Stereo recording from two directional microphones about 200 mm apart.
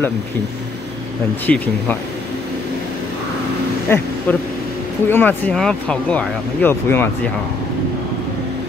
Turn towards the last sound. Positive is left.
turn(degrees=10)  # may be behind; listen again after turning